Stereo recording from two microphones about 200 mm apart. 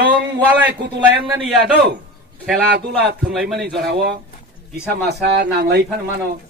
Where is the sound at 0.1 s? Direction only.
5° right (ahead or behind).